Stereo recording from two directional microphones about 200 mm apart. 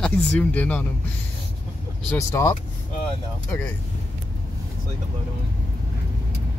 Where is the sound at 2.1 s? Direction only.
15° left (ahead or behind).